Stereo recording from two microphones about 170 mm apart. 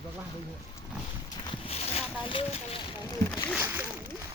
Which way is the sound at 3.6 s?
10° right (ahead or behind).